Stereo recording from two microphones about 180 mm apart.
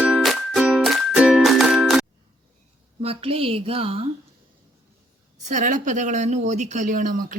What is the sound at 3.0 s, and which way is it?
Speech, 30° right (ahead or behind).